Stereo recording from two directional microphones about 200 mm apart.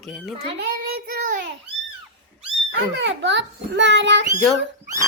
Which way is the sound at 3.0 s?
60° right (ahead or behind).